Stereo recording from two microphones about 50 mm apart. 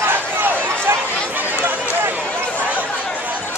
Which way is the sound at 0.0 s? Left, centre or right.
Right.